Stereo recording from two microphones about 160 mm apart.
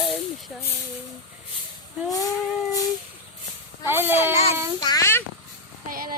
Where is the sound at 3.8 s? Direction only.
15° right (ahead or behind).